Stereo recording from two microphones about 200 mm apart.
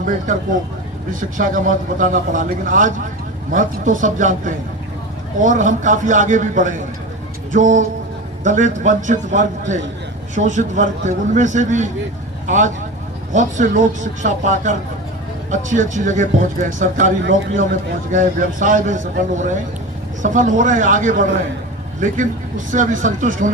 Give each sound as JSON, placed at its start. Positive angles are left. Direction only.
{"t": 1.1, "sound": "a man's voice", "side_deg": -40}